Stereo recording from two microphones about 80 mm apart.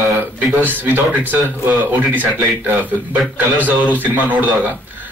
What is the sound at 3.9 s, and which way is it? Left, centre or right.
Speech, right.